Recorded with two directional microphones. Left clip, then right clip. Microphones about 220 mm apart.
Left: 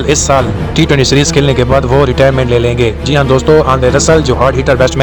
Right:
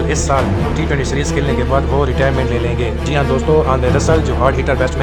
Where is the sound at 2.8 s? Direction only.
25° left (ahead or behind).